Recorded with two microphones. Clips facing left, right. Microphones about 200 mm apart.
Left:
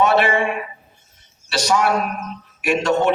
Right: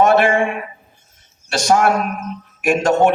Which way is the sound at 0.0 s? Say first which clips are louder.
Right 3 dB; 50° right (ahead or behind).